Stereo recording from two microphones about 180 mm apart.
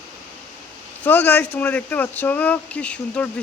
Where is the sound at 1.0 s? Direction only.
10° left (ahead or behind).